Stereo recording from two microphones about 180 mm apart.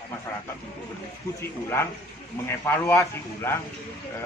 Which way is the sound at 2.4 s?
10° left (ahead or behind).